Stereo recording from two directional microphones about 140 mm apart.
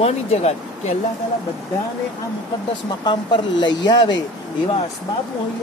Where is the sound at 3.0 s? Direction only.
30° left (ahead or behind).